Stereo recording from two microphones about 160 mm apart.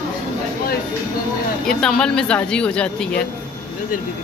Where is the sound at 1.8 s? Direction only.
5° left (ahead or behind).